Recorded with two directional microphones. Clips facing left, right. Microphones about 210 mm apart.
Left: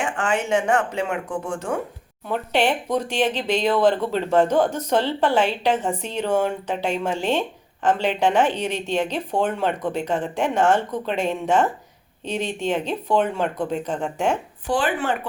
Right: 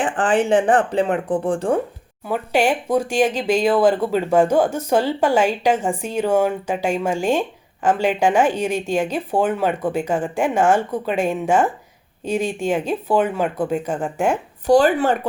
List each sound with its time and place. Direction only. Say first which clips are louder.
0.0 s speech: right 5 dB; 35° right (ahead or behind)
2.2 s speech: right 3 dB; 10° right (ahead or behind)
14.7 s speech: right 8 dB; 40° right (ahead or behind)